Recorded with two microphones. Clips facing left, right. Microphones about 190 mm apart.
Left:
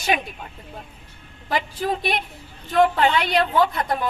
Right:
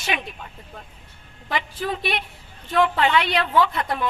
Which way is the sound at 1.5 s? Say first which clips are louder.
Left 3 dB; 40° left (ahead or behind).